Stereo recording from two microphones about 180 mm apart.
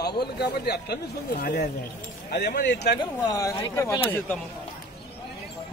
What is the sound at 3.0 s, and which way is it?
A man's voice, 20° left (ahead or behind).